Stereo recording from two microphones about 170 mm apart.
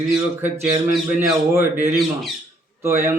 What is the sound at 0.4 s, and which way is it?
Speech, 15° right (ahead or behind).